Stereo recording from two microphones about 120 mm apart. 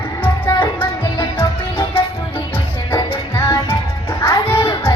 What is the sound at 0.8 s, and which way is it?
Music, 20° left (ahead or behind).